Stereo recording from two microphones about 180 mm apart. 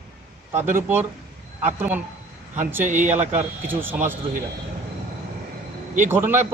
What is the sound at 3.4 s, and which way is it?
Speech, 10° right (ahead or behind).